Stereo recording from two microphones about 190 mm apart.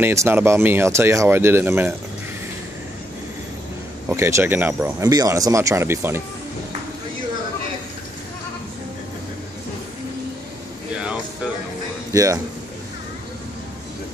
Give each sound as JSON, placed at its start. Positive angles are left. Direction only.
{"t": 0.0, "sound": "speech", "side_deg": -15}
{"t": 4.1, "sound": "speech", "side_deg": -15}
{"t": 12.1, "sound": "a man's voice", "side_deg": -15}